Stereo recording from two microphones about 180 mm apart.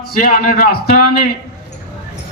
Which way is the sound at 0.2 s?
50° left (ahead or behind).